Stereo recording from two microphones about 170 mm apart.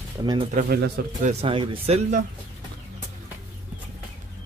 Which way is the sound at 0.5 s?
65° right (ahead or behind).